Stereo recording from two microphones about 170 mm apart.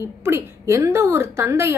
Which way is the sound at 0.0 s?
15° right (ahead or behind).